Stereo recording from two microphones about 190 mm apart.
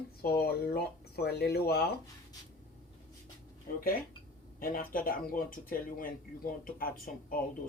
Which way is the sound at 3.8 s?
50° left (ahead or behind).